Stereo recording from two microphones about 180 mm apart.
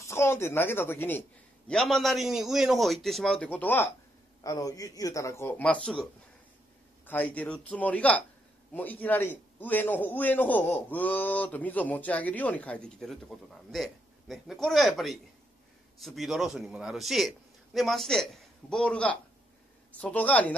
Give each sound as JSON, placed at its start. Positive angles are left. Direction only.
{"t": 0.0, "sound": "a man's voice", "side_deg": 15}
{"t": 7.1, "sound": "a man's voice", "side_deg": 10}